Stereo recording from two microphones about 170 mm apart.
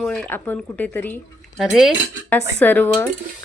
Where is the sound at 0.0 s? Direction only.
5° left (ahead or behind).